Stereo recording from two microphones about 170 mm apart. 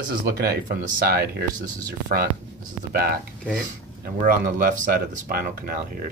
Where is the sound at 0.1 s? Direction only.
65° right (ahead or behind).